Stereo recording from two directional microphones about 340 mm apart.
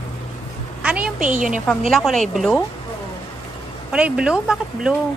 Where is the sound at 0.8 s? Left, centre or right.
Centre.